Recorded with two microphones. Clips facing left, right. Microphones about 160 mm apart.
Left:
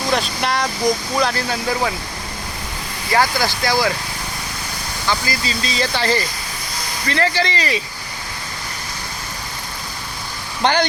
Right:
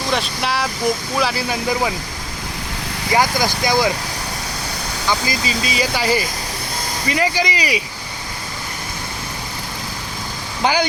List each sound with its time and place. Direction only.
0.1 s speech: centre (ahead or behind)
3.1 s speech: 15° right (ahead or behind)
5.0 s speech: 15° right (ahead or behind)
10.6 s speech: 5° right (ahead or behind)